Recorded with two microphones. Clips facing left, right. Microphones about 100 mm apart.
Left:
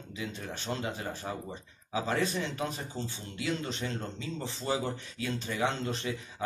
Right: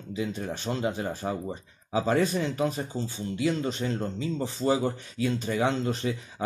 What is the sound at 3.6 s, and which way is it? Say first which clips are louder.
Speech: right 6 dB; 30° right (ahead or behind).